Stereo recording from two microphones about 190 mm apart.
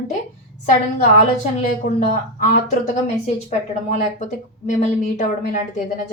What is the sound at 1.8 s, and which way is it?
A woman's voice, 40° left (ahead or behind).